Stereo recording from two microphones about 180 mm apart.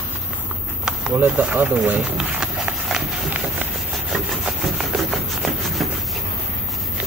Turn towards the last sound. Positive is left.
turn(degrees=0)  # may be behind; listen again after turning